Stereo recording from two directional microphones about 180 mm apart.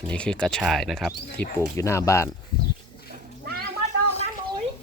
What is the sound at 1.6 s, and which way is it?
Speech, 15° left (ahead or behind).